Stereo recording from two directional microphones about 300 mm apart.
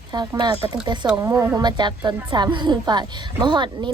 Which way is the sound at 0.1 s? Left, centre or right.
Centre.